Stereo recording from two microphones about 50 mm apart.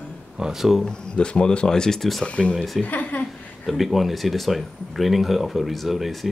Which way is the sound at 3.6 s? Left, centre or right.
Centre.